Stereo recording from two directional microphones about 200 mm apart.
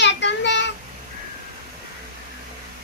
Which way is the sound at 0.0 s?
60° left (ahead or behind).